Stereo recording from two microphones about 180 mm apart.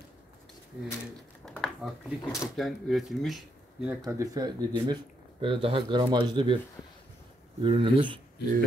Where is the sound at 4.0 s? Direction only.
20° right (ahead or behind).